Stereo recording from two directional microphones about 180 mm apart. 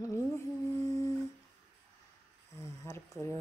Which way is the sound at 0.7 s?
15° left (ahead or behind).